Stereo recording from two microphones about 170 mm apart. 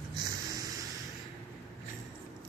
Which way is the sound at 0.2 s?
25° right (ahead or behind).